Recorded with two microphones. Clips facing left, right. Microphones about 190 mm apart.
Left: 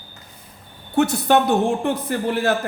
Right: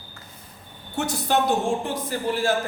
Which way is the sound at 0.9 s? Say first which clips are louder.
Left 7 dB; 60° left (ahead or behind).